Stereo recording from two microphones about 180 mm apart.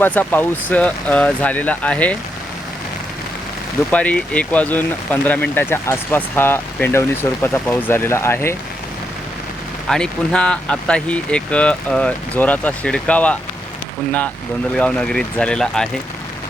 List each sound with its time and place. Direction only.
0.0 s speech: 10° left (ahead or behind)
3.9 s speech: 5° left (ahead or behind)
9.9 s speech: 5° left (ahead or behind)
14.8 s speech: 5° left (ahead or behind)